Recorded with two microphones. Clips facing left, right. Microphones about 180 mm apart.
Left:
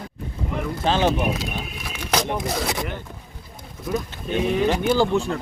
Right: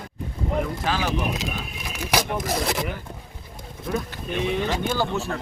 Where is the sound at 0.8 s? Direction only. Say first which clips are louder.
Left 10 dB; 25° left (ahead or behind).